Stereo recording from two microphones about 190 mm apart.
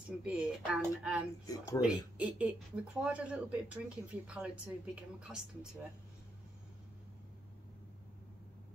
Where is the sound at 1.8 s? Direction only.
5° right (ahead or behind).